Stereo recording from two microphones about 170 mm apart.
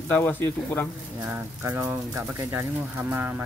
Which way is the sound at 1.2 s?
15° right (ahead or behind).